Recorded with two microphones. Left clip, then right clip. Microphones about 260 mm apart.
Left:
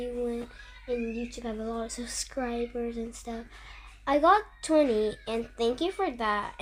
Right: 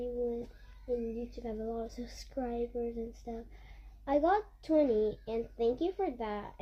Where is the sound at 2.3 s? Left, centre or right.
Left.